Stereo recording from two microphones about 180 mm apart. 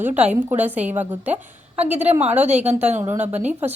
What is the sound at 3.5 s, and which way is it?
Speech, 10° right (ahead or behind).